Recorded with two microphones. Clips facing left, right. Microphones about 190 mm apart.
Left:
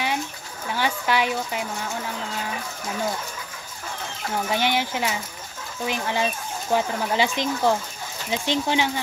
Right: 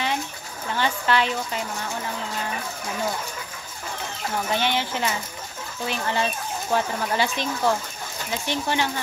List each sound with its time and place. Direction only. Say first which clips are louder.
0.7 s speech: even; 10° left (ahead or behind)
4.5 s speech: left 1 dB; 15° left (ahead or behind)